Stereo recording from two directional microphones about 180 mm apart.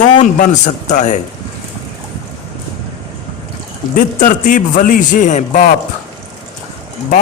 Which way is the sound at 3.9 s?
50° left (ahead or behind).